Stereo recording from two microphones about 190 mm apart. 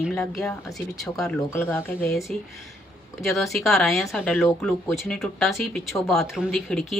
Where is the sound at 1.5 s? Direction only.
10° left (ahead or behind).